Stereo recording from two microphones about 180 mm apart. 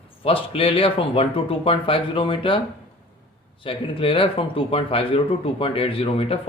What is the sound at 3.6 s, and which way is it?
Speech, 30° left (ahead or behind).